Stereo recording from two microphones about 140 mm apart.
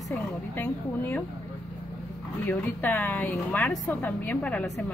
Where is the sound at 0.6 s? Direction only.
15° left (ahead or behind).